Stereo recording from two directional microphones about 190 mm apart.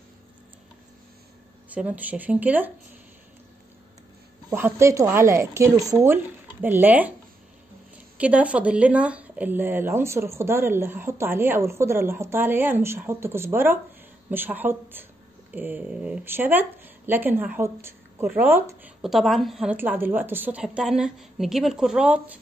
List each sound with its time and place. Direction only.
1.7 s speech: 10° right (ahead or behind)
4.5 s speech: 10° right (ahead or behind)
8.2 s speech: 5° right (ahead or behind)